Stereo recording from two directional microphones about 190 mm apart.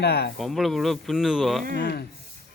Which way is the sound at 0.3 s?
Centre (ahead or behind).